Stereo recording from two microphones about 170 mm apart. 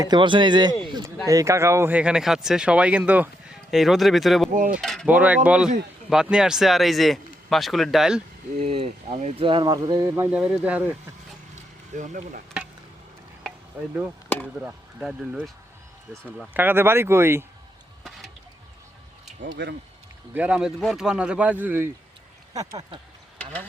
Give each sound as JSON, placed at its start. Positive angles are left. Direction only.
{"t": 0.0, "sound": "speech", "side_deg": -25}
{"t": 4.5, "sound": "speech", "side_deg": -50}
{"t": 4.8, "sound": "mechanisms", "side_deg": 0}
{"t": 5.0, "sound": "speech", "side_deg": -10}
{"t": 8.6, "sound": "speech", "side_deg": -35}
{"t": 11.9, "sound": "speech", "side_deg": -50}
{"t": 13.7, "sound": "speech", "side_deg": -10}
{"t": 14.3, "sound": "speech", "side_deg": 10}
{"t": 14.6, "sound": "speech", "side_deg": -5}
{"t": 16.6, "sound": "speech", "side_deg": -10}
{"t": 19.6, "sound": "speech", "side_deg": -90}
{"t": 20.3, "sound": "speech", "side_deg": -10}
{"t": 23.4, "sound": "mechanisms", "side_deg": 5}